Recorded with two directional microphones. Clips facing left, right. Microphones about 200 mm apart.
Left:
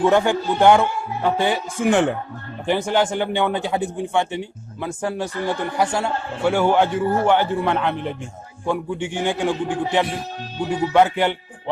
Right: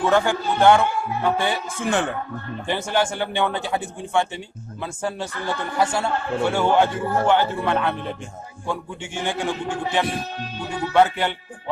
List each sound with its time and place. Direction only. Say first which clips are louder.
0.0 s a man's voice: left 3 dB; 20° left (ahead or behind)